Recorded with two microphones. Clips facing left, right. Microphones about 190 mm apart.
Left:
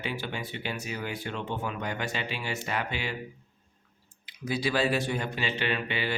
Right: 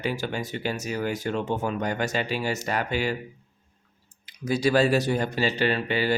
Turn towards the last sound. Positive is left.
turn(degrees=-40)  # may be behind; listen again after turning